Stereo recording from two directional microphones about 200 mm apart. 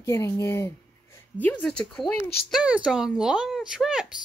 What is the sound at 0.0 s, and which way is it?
A child's voice, 15° left (ahead or behind).